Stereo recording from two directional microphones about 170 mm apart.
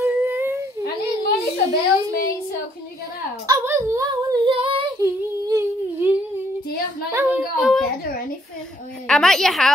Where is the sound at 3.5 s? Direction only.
15° right (ahead or behind); by 4.8 s 30° right (ahead or behind).